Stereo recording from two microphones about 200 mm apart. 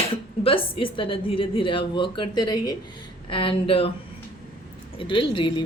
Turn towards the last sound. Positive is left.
turn(degrees=25)  # may be behind; listen again after turning